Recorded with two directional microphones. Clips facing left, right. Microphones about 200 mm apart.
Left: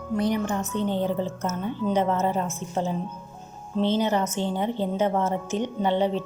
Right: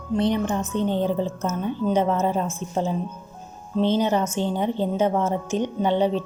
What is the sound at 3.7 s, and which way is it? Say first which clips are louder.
A woman's voice: right 2 dB; 15° right (ahead or behind).